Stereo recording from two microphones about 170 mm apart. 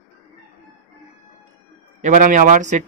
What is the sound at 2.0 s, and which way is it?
Speech, 50° right (ahead or behind).